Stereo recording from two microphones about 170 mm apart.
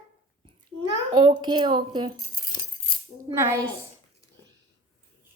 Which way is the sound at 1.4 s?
25° right (ahead or behind).